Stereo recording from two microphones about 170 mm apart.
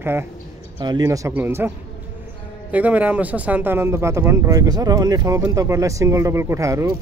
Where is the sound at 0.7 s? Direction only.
25° right (ahead or behind).